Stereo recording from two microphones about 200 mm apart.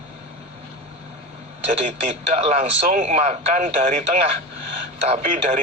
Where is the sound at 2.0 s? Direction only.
30° right (ahead or behind).